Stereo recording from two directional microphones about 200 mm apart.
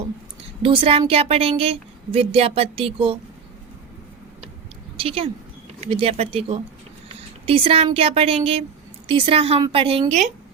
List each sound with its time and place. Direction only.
0.6 s a woman's voice: 25° right (ahead or behind)
4.9 s a woman's voice: 30° right (ahead or behind)
7.2 s a sound: 30° right (ahead or behind)
7.9 s a woman's voice: 30° right (ahead or behind)